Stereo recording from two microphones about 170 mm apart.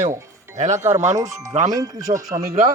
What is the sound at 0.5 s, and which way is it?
Speech, 45° right (ahead or behind).